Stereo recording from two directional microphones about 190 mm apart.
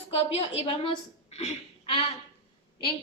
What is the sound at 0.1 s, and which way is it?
A woman's voice, 30° left (ahead or behind).